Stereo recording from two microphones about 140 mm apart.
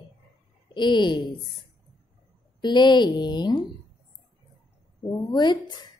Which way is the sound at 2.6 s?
30° left (ahead or behind).